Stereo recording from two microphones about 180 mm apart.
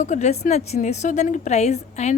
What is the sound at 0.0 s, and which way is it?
A woman's voice, 40° left (ahead or behind).